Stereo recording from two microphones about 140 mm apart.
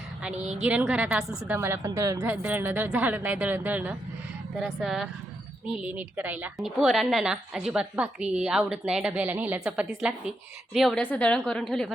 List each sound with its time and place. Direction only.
0.2 s a woman's voice: 5° right (ahead or behind)
6.6 s a woman's voice: centre (ahead or behind)
11.0 s a woman's voice: 10° left (ahead or behind)